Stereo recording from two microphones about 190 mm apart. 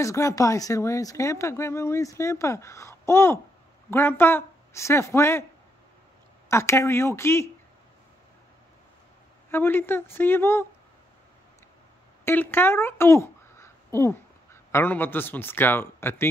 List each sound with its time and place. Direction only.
0.0 s speech: 15° left (ahead or behind)
6.5 s speech: 15° left (ahead or behind)
9.5 s speech: 10° left (ahead or behind)
12.3 s speech: 10° left (ahead or behind)